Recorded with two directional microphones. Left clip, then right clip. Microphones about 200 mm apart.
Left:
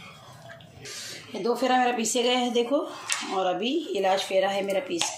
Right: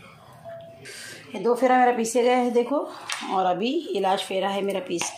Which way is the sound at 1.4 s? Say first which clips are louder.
Right 4 dB; 35° right (ahead or behind).